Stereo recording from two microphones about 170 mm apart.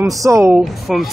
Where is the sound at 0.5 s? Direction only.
Centre (ahead or behind).